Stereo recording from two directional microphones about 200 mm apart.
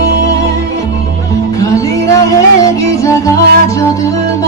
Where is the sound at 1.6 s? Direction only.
15° left (ahead or behind).